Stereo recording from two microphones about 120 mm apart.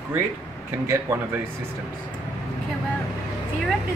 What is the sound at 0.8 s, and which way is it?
Speech, 20° right (ahead or behind).